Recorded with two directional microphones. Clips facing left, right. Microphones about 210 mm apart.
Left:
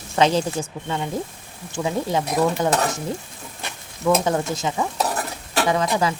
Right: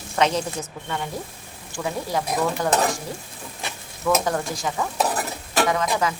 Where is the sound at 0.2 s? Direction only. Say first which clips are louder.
Left 3 dB; 30° left (ahead or behind).